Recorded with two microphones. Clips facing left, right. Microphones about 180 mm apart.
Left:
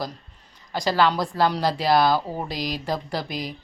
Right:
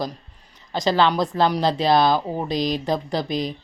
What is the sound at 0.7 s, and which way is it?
Speech, 20° right (ahead or behind).